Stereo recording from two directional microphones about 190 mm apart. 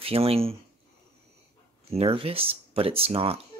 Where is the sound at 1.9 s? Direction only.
30° right (ahead or behind).